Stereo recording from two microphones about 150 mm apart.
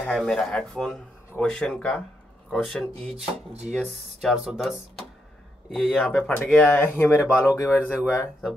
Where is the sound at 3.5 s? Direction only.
50° right (ahead or behind).